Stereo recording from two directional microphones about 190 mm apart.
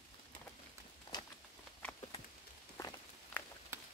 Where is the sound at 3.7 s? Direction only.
15° right (ahead or behind).